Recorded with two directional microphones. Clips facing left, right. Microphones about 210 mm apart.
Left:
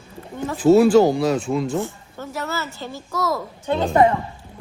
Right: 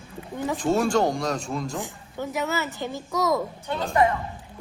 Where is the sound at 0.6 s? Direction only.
5° left (ahead or behind).